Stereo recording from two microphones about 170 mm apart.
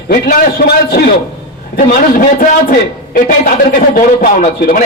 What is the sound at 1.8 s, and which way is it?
Speech, 50° left (ahead or behind).